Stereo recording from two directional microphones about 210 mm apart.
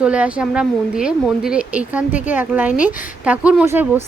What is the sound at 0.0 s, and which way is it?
A woman's voice, 5° right (ahead or behind).